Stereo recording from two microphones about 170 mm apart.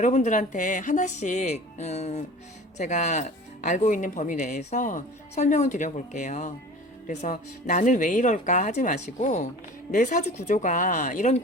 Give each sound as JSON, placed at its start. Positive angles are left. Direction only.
{"t": 0.0, "sound": "speech", "side_deg": 45}